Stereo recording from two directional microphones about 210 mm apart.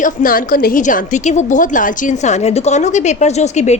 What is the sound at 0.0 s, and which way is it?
A woman's voice, 40° left (ahead or behind).